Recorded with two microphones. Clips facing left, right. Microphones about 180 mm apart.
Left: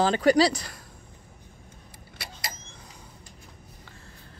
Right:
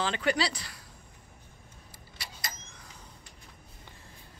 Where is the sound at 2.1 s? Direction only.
60° left (ahead or behind).